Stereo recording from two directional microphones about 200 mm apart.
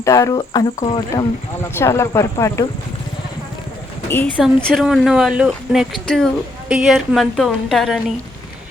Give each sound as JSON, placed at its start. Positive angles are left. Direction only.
{"t": 0.0, "sound": "speech", "side_deg": 15}
{"t": 4.4, "sound": "speech", "side_deg": 0}